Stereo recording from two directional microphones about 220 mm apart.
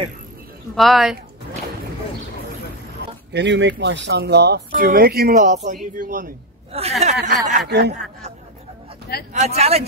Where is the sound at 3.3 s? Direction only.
55° right (ahead or behind); by 7.1 s 30° right (ahead or behind).